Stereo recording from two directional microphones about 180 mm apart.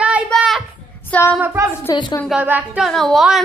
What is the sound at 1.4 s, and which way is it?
Speech, 10° right (ahead or behind).